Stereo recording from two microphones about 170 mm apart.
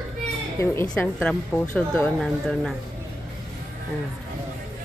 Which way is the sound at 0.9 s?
5° left (ahead or behind).